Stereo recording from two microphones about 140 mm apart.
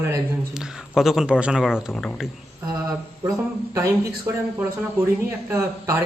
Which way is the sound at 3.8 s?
20° right (ahead or behind).